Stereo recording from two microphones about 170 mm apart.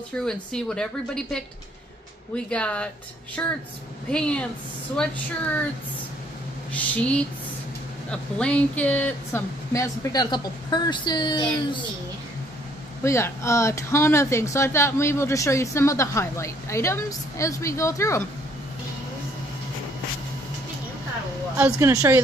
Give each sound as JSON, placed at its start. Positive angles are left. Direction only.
{"t": 0.2, "sound": "a woman's voice", "side_deg": 5}
{"t": 6.7, "sound": "speech", "side_deg": 5}
{"t": 13.0, "sound": "speech", "side_deg": 15}
{"t": 21.7, "sound": "speech", "side_deg": -20}